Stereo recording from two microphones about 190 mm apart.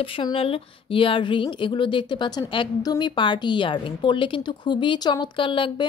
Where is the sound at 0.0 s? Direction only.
30° left (ahead or behind).